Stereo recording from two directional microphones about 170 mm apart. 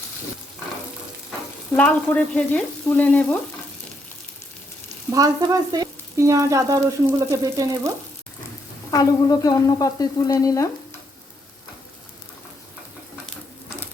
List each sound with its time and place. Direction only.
1.7 s frying: 10° left (ahead or behind)
5.1 s frying: 20° right (ahead or behind)
8.9 s frying: 20° left (ahead or behind)